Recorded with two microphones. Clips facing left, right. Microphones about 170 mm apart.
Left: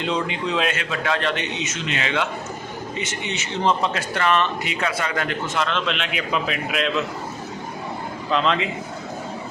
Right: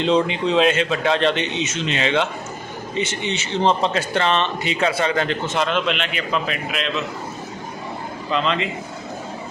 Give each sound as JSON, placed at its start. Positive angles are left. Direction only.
{"t": 0.0, "sound": "a man's voice", "side_deg": -25}
{"t": 5.9, "sound": "a man's voice", "side_deg": 5}
{"t": 8.3, "sound": "a man's voice", "side_deg": 0}